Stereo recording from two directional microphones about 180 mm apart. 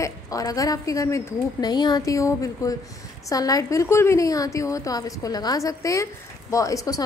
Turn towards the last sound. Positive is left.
turn(degrees=20)  # may be behind; listen again after turning